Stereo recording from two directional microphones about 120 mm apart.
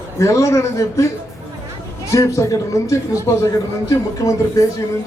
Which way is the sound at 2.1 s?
25° left (ahead or behind).